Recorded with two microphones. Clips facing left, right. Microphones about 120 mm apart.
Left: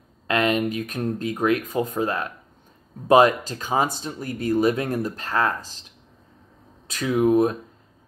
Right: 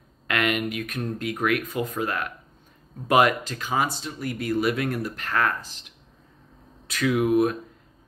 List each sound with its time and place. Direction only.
0.3 s a sound: 30° left (ahead or behind)
0.7 s speech: 30° left (ahead or behind)
6.9 s speech: 30° left (ahead or behind)